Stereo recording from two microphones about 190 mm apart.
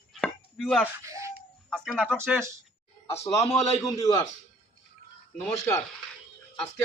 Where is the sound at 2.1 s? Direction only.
10° right (ahead or behind).